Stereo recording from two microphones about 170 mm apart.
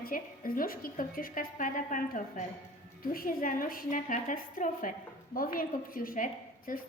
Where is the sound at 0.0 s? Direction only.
55° left (ahead or behind).